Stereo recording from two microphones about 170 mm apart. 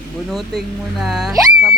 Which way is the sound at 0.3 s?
Centre (ahead or behind).